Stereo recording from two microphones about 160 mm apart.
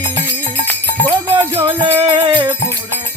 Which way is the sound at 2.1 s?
30° right (ahead or behind).